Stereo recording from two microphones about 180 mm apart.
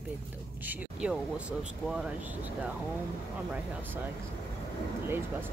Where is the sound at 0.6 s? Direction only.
5° right (ahead or behind).